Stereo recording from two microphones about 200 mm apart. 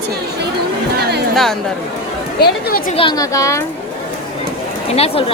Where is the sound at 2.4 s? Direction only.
45° left (ahead or behind).